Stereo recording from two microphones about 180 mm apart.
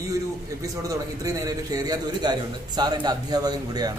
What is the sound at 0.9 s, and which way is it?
A man's voice, 20° right (ahead or behind).